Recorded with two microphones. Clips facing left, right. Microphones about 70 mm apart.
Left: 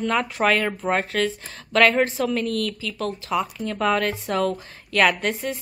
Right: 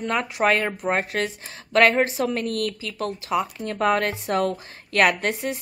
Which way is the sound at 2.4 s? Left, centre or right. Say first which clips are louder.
Left 1 dB; right.